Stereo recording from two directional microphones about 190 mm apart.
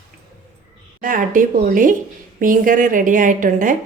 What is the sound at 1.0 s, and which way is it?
A woman's voice, 45° right (ahead or behind).